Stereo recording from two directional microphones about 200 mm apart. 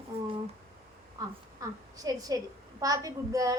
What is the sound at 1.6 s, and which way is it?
A woman's voice, 15° right (ahead or behind).